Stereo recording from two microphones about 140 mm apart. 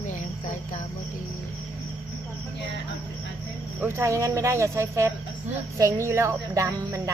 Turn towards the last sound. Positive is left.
turn(degrees=-20)  # may be behind; listen again after turning